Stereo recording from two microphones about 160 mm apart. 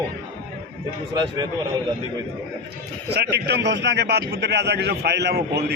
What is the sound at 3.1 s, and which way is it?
Speech, 90° right.